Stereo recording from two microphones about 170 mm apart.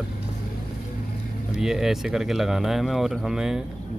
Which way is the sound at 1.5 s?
5° right (ahead or behind).